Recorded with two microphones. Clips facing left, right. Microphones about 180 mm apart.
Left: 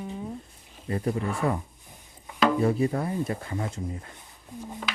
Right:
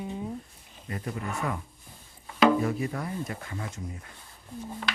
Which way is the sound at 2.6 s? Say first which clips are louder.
Left 5 dB; 30° left (ahead or behind).